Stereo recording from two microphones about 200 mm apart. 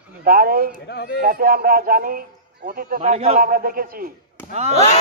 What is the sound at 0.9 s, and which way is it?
Speech, 55° left (ahead or behind).